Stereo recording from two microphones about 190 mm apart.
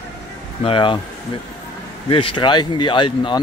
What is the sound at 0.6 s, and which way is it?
Speech, 25° left (ahead or behind).